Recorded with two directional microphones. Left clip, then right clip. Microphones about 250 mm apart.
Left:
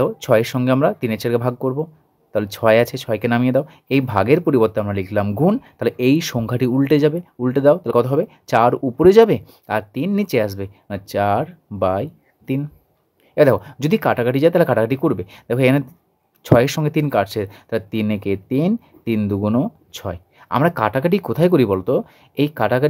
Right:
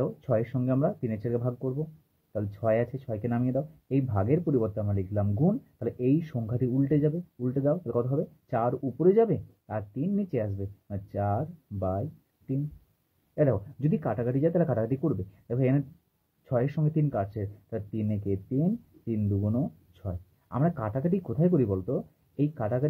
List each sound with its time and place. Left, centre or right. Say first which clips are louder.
0.0 s speech: left 13 dB; left
13.3 s speech: left 13 dB; left